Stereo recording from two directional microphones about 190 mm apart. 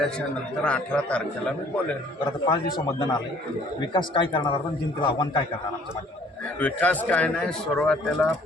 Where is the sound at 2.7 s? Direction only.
20° left (ahead or behind).